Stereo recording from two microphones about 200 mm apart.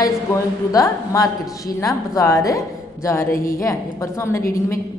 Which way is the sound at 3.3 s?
45° left (ahead or behind).